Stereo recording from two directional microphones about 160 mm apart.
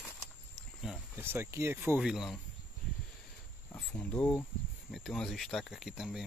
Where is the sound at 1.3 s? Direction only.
15° right (ahead or behind).